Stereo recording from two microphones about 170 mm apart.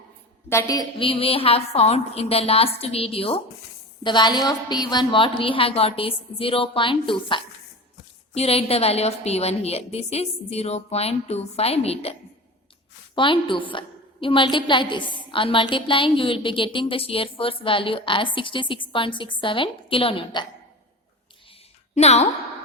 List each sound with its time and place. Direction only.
0.4 s a woman's voice: 20° left (ahead or behind); by 12.1 s 35° left (ahead or behind)
13.1 s a woman's voice: 30° left (ahead or behind)
21.9 s a woman's voice: 40° left (ahead or behind)